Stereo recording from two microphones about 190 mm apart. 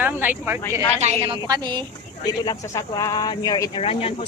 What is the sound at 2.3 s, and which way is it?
Speech, 20° left (ahead or behind).